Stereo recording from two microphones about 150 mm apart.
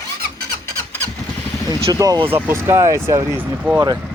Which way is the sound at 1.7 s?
20° right (ahead or behind).